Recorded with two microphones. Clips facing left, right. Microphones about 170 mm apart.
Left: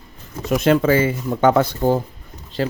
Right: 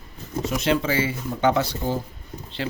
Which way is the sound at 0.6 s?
50° left (ahead or behind).